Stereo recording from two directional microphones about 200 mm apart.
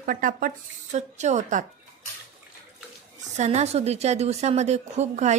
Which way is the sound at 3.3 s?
35° right (ahead or behind).